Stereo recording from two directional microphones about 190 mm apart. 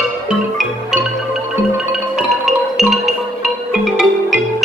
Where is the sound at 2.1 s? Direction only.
Centre (ahead or behind).